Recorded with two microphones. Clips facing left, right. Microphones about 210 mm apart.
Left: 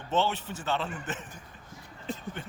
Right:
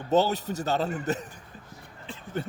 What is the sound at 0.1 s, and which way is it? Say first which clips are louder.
A man's voice: right 5 dB; 40° right (ahead or behind).